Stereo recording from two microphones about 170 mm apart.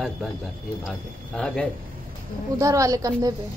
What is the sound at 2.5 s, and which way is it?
Speech, 20° right (ahead or behind).